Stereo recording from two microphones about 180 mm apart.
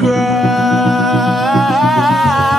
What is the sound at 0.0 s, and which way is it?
Music, centre (ahead or behind).